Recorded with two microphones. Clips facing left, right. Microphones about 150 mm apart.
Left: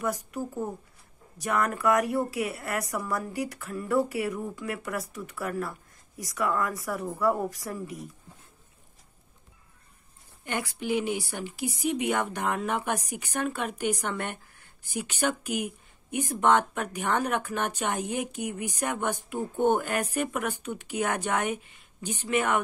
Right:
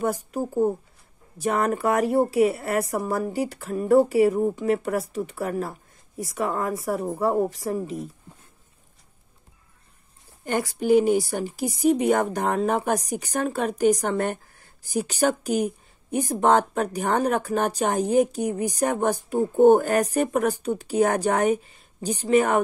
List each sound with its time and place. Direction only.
0.0 s speech: 30° right (ahead or behind)
0.4 s speech: 65° right (ahead or behind)
1.4 s speech: 30° right (ahead or behind)
4.8 s speech: 30° right (ahead or behind)
10.4 s speech: 40° right (ahead or behind)